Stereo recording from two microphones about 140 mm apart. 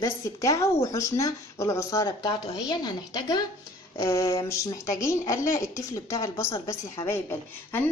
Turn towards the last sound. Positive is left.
turn(degrees=15)  # may be behind; listen again after turning